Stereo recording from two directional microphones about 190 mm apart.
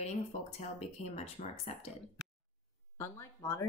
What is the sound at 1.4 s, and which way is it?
Speech, 40° left (ahead or behind).